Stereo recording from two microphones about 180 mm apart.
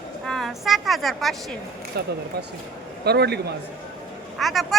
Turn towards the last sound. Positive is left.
turn(degrees=0)  # may be behind; listen again after turning